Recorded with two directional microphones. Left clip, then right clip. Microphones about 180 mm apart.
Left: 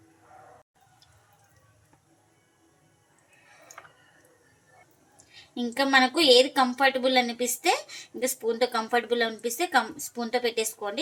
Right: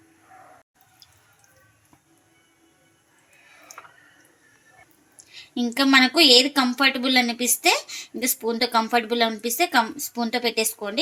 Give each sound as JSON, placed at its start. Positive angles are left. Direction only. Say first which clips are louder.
{"t": 5.3, "sound": "a woman's voice", "louder": "right 5 dB", "side_deg": -35}